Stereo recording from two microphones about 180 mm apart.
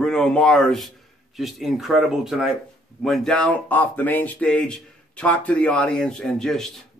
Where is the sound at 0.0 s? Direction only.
5° left (ahead or behind).